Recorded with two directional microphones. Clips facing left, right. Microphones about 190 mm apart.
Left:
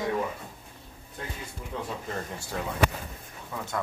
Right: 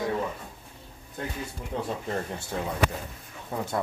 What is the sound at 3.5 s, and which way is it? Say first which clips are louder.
Speech: right 5 dB; 35° right (ahead or behind).